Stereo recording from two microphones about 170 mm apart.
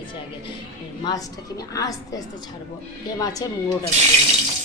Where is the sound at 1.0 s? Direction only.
20° left (ahead or behind).